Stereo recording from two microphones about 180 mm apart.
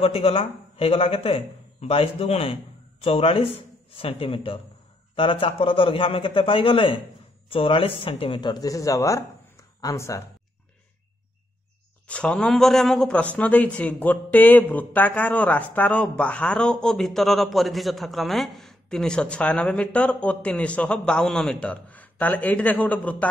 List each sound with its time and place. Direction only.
0.0 s a man's voice: 30° left (ahead or behind); by 10.2 s 15° left (ahead or behind)
12.1 s a man's voice: 5° left (ahead or behind)